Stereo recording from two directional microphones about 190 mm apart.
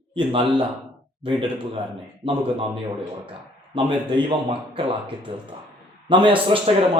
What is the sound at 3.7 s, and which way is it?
Speech, 25° right (ahead or behind).